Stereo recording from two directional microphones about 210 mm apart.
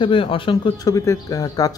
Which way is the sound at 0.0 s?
25° left (ahead or behind).